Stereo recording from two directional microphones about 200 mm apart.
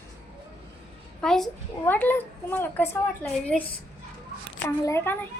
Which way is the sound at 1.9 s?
10° left (ahead or behind).